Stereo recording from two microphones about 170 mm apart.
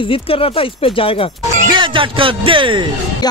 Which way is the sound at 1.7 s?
30° right (ahead or behind).